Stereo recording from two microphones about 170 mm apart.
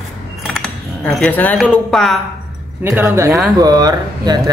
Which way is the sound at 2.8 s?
15° right (ahead or behind).